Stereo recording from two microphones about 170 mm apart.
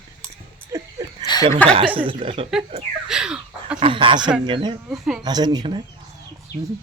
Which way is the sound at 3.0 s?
5° right (ahead or behind).